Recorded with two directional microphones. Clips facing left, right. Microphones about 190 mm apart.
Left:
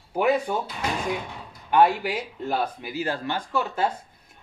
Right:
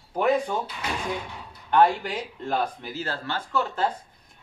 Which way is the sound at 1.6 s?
10° left (ahead or behind).